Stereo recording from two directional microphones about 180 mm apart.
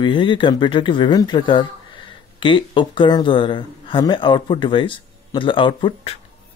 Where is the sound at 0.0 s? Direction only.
25° left (ahead or behind).